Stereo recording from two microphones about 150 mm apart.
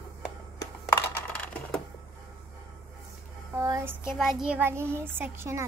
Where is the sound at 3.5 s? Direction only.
20° right (ahead or behind).